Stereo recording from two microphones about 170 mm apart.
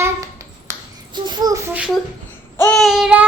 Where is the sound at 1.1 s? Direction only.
25° right (ahead or behind).